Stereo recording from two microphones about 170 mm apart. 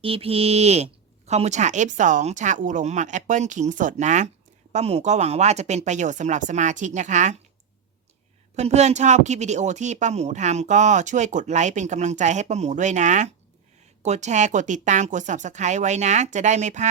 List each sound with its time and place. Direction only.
0.0 s speech: 35° right (ahead or behind)
8.5 s speech: 40° right (ahead or behind)